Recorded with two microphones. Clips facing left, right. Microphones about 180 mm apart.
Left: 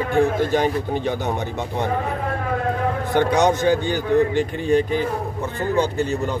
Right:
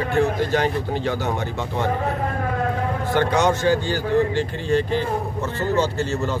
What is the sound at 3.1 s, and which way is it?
Speech, 15° left (ahead or behind).